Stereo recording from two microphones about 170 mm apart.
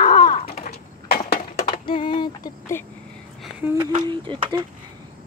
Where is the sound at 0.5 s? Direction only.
60° left (ahead or behind).